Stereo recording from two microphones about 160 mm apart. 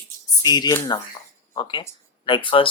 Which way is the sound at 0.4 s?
25° left (ahead or behind).